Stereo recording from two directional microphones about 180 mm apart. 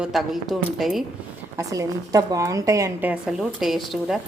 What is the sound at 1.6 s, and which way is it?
A woman's voice, 20° right (ahead or behind).